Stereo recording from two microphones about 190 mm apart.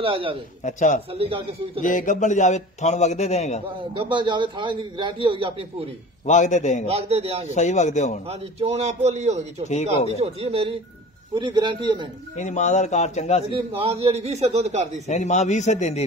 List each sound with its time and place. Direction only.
0.0 s a man's voice: 30° right (ahead or behind)
0.7 s a man's voice: 40° left (ahead or behind)
1.1 s a man's voice: 30° right (ahead or behind)
1.8 s a man's voice: 45° left (ahead or behind)
3.9 s a man's voice: 25° right (ahead or behind)
6.2 s a man's voice: 40° left (ahead or behind)
6.9 s a man's voice: 30° right (ahead or behind)
7.4 s a man's voice: 40° left (ahead or behind)
8.3 s a man's voice: 35° right (ahead or behind)
9.7 s a man's voice: 35° left (ahead or behind)
10.1 s a man's voice: 30° right (ahead or behind)
12.4 s a man's voice: 40° left (ahead or behind)
13.5 s a man's voice: 30° right (ahead or behind)
15.0 s a man's voice: 40° left (ahead or behind)